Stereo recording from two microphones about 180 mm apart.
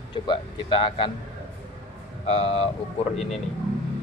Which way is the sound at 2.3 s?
35° left (ahead or behind).